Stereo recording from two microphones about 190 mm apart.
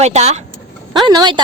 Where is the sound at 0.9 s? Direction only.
20° right (ahead or behind).